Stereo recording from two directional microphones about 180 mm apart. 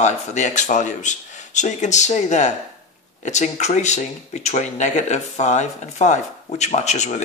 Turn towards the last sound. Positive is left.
turn(degrees=40)  # may be behind; listen again after turning